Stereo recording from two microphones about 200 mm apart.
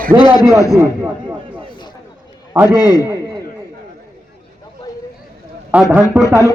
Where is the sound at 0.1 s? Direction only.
15° right (ahead or behind).